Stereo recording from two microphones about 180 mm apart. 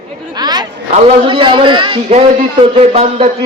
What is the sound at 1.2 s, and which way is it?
A man's voice, 30° right (ahead or behind).